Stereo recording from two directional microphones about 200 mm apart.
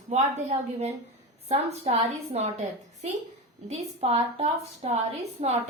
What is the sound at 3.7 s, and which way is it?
A woman's voice, 30° right (ahead or behind).